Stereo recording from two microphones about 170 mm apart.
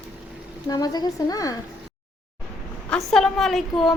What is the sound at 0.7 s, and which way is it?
Speech, 20° left (ahead or behind).